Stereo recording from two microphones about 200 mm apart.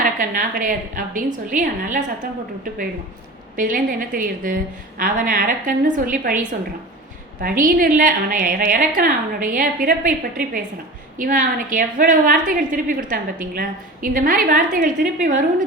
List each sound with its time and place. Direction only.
0.0 s a woman's voice: 45° right (ahead or behind)
3.5 s a woman's voice: 40° right (ahead or behind)